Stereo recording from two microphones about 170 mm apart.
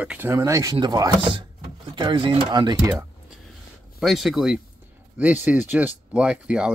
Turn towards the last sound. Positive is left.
turn(degrees=-5)  # may be behind; listen again after turning